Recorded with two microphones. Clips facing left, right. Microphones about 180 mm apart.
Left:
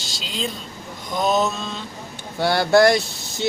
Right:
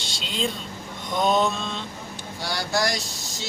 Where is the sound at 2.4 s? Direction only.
60° left (ahead or behind).